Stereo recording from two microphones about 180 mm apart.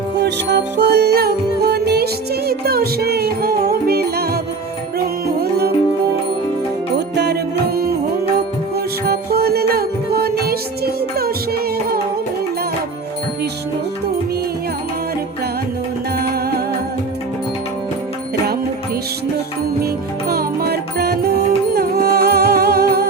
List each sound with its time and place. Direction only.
0.2 s music: 70° right (ahead or behind)
6.9 s music: 65° right (ahead or behind)
9.0 s music: 60° right (ahead or behind)
16.1 s music: 60° right (ahead or behind)
19.8 s music: 60° right (ahead or behind)